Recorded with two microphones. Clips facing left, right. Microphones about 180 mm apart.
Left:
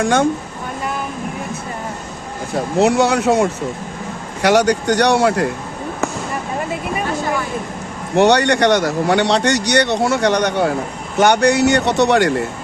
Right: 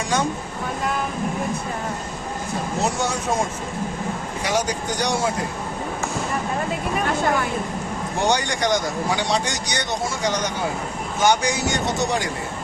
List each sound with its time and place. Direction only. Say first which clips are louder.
0.0 s speech: left 8 dB; 55° left (ahead or behind)
2.8 s a man's voice: left 12 dB; 65° left (ahead or behind)
8.1 s a man's voice: left 10 dB; 70° left (ahead or behind)